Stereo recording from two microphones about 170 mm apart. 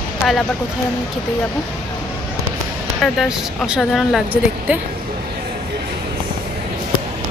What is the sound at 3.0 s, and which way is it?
Speech, centre (ahead or behind).